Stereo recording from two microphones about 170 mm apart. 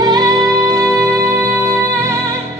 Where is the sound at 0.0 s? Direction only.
20° right (ahead or behind).